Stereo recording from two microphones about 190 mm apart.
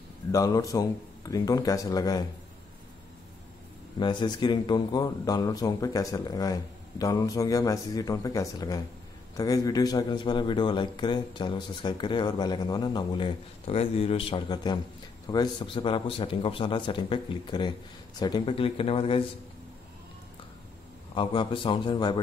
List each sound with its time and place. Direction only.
0.3 s a man's voice: 20° left (ahead or behind)
4.0 s a man's voice: 25° left (ahead or behind)
21.1 s a man's voice: 25° left (ahead or behind)